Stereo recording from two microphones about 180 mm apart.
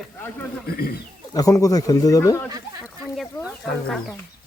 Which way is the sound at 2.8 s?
Centre (ahead or behind).